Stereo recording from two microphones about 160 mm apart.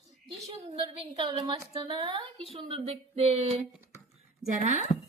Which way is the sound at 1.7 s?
35° right (ahead or behind).